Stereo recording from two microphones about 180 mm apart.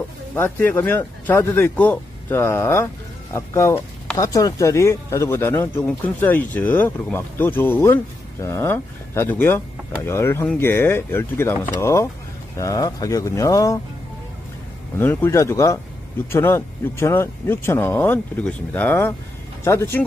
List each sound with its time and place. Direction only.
0.3 s speech: 10° left (ahead or behind)
15.0 s speech: 15° left (ahead or behind)